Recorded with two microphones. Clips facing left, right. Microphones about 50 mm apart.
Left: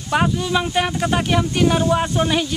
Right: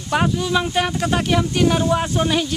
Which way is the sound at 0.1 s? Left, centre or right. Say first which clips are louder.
Even; centre.